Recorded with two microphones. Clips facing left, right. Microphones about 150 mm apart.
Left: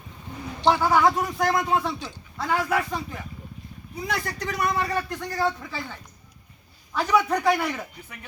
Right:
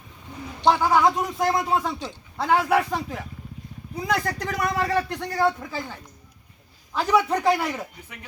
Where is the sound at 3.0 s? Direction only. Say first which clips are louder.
Right 3 dB; 90° right.